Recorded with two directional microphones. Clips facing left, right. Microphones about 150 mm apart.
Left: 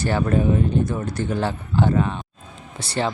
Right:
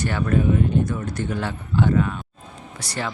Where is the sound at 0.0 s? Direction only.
30° left (ahead or behind).